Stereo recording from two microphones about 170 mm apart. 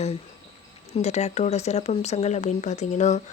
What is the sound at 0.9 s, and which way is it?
Speech, 40° left (ahead or behind).